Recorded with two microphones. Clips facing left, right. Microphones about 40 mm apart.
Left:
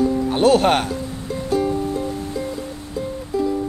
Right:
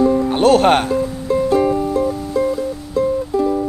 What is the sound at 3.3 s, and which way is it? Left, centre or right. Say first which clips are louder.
Music: right 4 dB; right.